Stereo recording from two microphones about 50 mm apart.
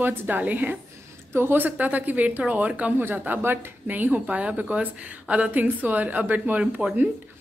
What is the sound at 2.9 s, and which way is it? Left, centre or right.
Speech, right.